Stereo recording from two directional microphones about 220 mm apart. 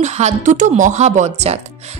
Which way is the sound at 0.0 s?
30° right (ahead or behind).